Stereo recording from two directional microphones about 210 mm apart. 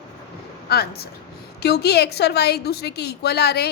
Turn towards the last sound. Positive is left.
turn(degrees=50)  # may be behind; listen again after turning